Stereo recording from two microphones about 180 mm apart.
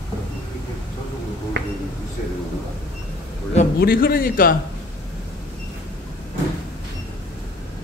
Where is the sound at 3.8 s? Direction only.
55° left (ahead or behind).